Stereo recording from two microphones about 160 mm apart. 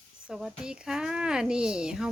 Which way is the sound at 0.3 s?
5° right (ahead or behind).